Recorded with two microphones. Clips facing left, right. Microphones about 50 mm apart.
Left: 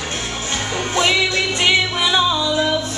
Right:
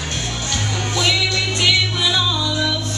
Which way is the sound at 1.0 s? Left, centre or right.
Left.